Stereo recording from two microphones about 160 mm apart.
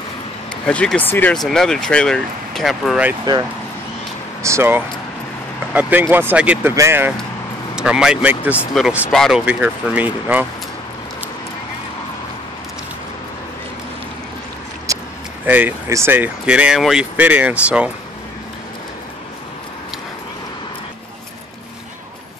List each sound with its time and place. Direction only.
0.7 s speech: 5° left (ahead or behind)
4.4 s speech: 15° right (ahead or behind); by 9.4 s centre (ahead or behind)
9.5 s speech: 10° right (ahead or behind)
14.9 s a sound: 20° right (ahead or behind)
15.4 s speech: 10° right (ahead or behind)